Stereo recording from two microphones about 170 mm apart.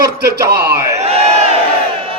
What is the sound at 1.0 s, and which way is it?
Crowd, 40° right (ahead or behind).